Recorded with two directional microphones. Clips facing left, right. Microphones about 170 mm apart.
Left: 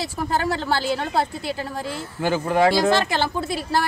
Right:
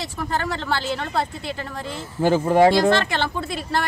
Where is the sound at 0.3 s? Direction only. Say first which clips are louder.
Left 3 dB; 10° left (ahead or behind).